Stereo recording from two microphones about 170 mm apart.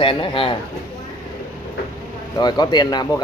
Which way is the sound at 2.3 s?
25° left (ahead or behind).